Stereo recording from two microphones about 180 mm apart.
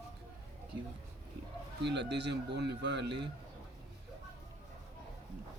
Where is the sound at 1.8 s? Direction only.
75° right (ahead or behind).